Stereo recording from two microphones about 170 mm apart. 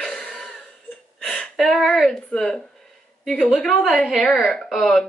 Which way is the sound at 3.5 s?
5° left (ahead or behind).